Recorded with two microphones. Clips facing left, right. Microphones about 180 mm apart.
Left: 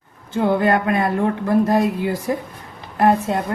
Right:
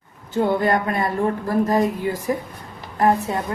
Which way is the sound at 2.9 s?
70° left (ahead or behind).